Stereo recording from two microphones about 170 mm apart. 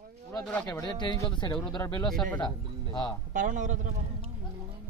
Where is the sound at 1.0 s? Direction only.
25° left (ahead or behind).